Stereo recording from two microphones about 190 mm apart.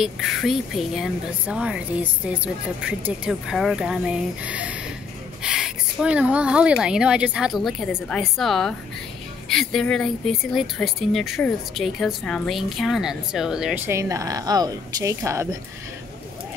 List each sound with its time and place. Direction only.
0.0 s speech: centre (ahead or behind); by 15.4 s 15° right (ahead or behind)